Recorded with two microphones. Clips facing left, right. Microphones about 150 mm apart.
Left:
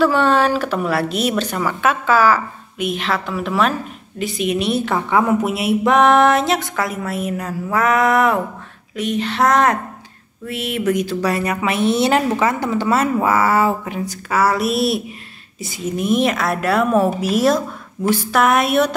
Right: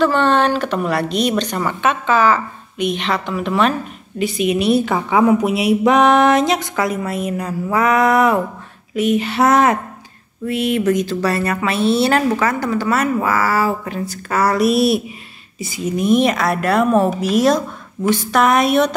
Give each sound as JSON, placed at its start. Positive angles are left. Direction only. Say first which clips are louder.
{"t": 0.0, "sound": "a woman's voice", "louder": "even", "side_deg": 5}
{"t": 14.3, "sound": "a woman's voice", "louder": "right 2 dB", "side_deg": 5}